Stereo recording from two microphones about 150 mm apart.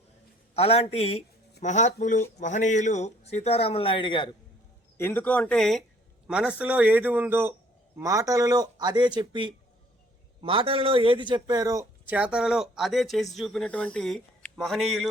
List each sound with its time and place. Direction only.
0.5 s a man's voice: 40° left (ahead or behind)
1.6 s a man's voice: 50° left (ahead or behind); by 4.4 s 30° left (ahead or behind)
4.9 s a man's voice: 15° left (ahead or behind); by 11.9 s 25° right (ahead or behind)
12.0 s speech: 10° right (ahead or behind)